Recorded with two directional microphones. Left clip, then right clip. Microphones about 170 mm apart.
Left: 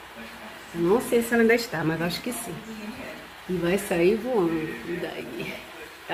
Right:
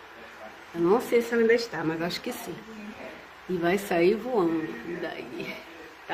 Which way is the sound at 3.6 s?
5° left (ahead or behind).